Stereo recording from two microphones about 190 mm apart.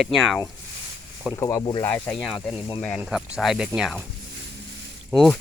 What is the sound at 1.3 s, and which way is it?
Speech, 20° left (ahead or behind).